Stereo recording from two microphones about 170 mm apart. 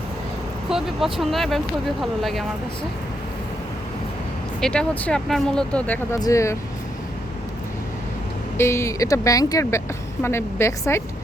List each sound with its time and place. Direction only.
0.7 s speech: centre (ahead or behind)
4.6 s speech: 5° left (ahead or behind)
6.1 s speech: 20° left (ahead or behind)
8.5 s speech: 15° left (ahead or behind)